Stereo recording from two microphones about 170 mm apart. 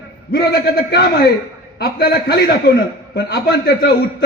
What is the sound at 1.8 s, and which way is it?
Speech, 70° left (ahead or behind).